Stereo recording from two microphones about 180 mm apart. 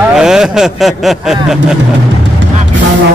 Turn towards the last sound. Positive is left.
turn(degrees=0)  # may be behind; listen again after turning